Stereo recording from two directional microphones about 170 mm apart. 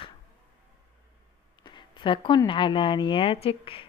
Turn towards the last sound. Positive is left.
turn(degrees=30)  # may be behind; listen again after turning